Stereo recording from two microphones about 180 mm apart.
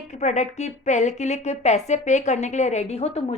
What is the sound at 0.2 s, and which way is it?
Speech, 40° left (ahead or behind).